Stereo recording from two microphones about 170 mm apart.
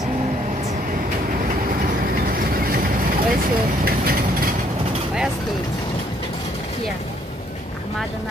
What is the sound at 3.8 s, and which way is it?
Vehicle, 60° right (ahead or behind).